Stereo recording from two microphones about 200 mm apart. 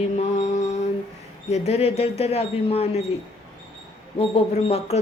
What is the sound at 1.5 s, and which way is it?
Speech, 30° left (ahead or behind).